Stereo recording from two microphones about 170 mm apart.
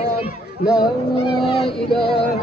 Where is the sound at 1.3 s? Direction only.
30° left (ahead or behind).